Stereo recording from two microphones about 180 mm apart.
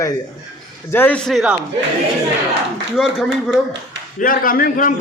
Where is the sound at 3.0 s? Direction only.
Centre (ahead or behind).